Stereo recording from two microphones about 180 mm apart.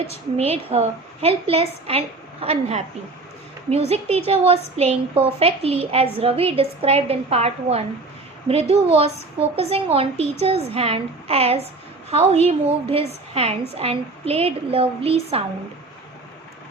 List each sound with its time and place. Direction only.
0.3 s a woman's voice: 35° right (ahead or behind)